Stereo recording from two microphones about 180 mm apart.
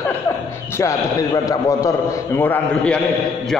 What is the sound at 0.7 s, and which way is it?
A man's voice, 15° left (ahead or behind).